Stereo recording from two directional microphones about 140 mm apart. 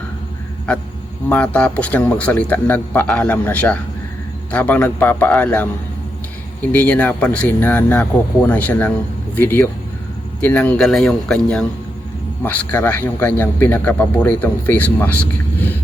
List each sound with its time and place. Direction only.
1.3 s a man's voice: 10° left (ahead or behind)